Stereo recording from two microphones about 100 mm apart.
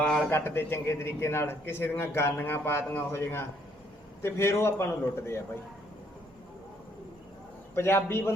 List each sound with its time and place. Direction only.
0.0 s a sound: 10° left (ahead or behind)
0.3 s a man's voice: 25° left (ahead or behind)
7.8 s a man's voice: 25° left (ahead or behind)